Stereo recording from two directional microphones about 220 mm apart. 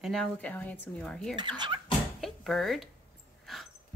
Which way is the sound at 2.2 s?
Centre (ahead or behind).